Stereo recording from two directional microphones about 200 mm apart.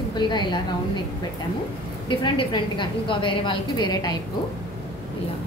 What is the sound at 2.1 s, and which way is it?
A woman's voice, 25° left (ahead or behind).